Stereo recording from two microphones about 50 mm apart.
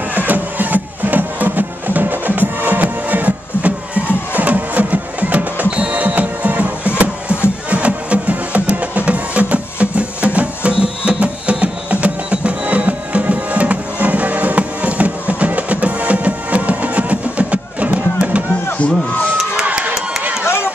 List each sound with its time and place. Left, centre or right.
0.1 s music: right
18.8 s music: left
19.6 s run: right